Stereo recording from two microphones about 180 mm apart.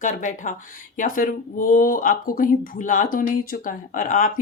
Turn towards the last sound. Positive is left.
turn(degrees=45)  # may be behind; listen again after turning